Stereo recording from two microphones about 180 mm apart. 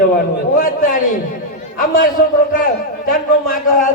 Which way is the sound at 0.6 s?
50° left (ahead or behind).